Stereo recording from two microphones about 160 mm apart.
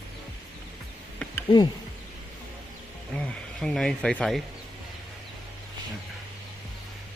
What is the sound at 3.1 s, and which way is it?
Speech, 5° left (ahead or behind).